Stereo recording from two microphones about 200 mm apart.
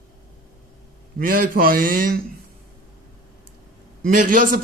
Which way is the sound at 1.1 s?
45° right (ahead or behind).